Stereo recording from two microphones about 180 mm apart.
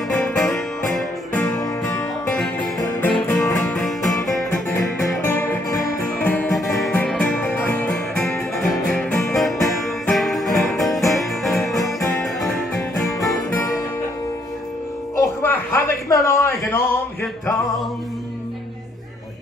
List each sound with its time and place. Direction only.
0.1 s music: 5° left (ahead or behind)
13.2 s music: 15° left (ahead or behind)
15.1 s a sound: 15° left (ahead or behind)